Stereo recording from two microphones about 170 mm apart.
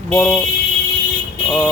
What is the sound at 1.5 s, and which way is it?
Speech, 10° left (ahead or behind).